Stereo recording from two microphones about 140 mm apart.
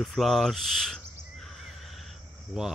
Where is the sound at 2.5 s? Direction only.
5° right (ahead or behind).